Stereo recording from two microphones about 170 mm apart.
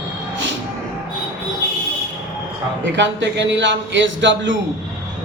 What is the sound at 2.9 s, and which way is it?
A man's voice, 90° right.